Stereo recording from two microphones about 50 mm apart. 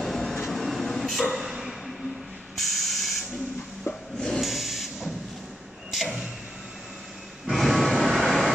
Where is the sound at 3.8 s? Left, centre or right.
Centre.